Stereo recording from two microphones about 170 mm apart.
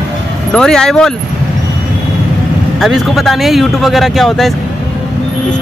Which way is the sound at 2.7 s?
Centre (ahead or behind).